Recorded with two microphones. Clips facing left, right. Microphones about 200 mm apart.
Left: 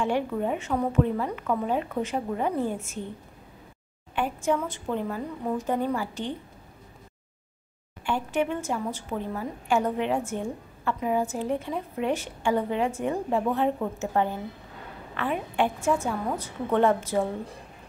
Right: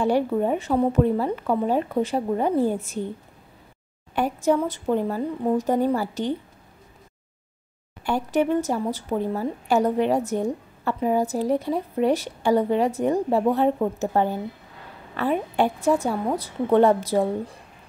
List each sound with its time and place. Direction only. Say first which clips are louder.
0.0 s a woman's voice: right 5 dB; 35° right (ahead or behind)
4.1 s a woman's voice: right 5 dB; 40° right (ahead or behind)
8.0 s a woman's voice: right 4 dB; 40° right (ahead or behind)